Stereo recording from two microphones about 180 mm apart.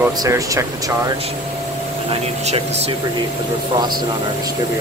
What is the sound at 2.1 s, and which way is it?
Speech, 35° right (ahead or behind).